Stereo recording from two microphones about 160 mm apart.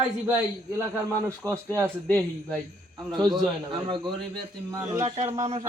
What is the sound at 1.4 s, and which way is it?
Speech, 20° right (ahead or behind).